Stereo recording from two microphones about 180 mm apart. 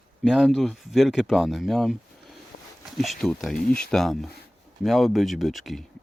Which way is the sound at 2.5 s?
40° left (ahead or behind).